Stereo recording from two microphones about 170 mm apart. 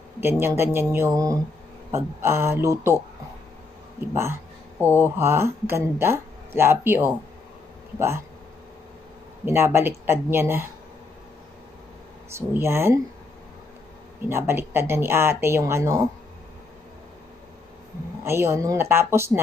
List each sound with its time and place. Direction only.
0.2 s speech: 15° right (ahead or behind)
4.1 s speech: 15° right (ahead or behind)
9.4 s speech: 15° right (ahead or behind)
12.3 s speech: 15° right (ahead or behind)
14.3 s speech: 15° right (ahead or behind)
18.2 s speech: 15° right (ahead or behind)